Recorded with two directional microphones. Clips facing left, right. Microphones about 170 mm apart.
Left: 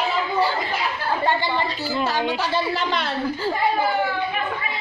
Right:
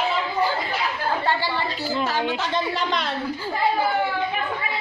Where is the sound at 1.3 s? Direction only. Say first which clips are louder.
Left 2 dB; 20° left (ahead or behind).